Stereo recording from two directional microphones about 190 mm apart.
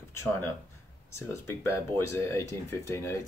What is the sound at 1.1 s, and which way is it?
Speech, 10° left (ahead or behind).